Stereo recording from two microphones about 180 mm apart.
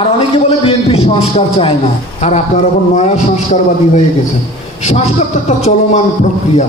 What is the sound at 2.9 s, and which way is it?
A man's voice, 40° left (ahead or behind).